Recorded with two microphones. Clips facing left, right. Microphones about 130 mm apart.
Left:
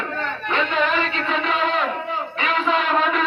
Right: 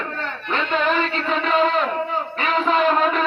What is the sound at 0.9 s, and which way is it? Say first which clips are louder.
Music: right 1 dB; 40° right (ahead or behind).